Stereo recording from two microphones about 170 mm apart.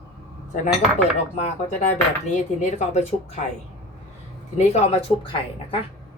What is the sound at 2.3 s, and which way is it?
A woman's voice, 45° left (ahead or behind).